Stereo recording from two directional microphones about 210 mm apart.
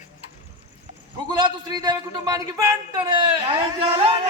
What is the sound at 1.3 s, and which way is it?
A man's voice, 20° right (ahead or behind).